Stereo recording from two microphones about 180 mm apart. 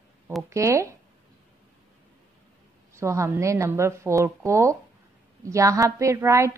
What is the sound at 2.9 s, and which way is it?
A woman's voice, 15° right (ahead or behind).